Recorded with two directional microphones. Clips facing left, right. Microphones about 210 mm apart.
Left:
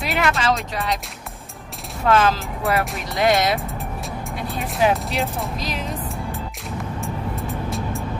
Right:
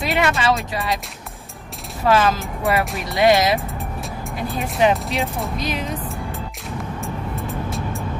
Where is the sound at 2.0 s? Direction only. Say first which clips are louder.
Right 1 dB; centre (ahead or behind).